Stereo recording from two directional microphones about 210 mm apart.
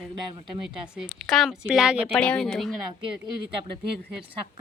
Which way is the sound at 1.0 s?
5° left (ahead or behind).